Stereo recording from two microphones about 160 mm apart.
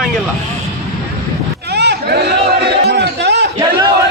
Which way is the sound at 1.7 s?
90° right.